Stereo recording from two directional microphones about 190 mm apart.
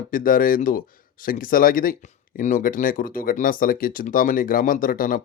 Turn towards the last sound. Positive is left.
turn(degrees=45)  # may be behind; listen again after turning